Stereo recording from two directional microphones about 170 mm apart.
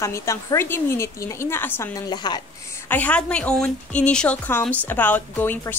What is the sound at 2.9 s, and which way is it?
A woman's voice, 10° left (ahead or behind).